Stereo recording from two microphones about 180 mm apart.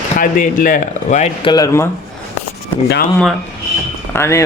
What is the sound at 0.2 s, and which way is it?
Speech, 50° left (ahead or behind).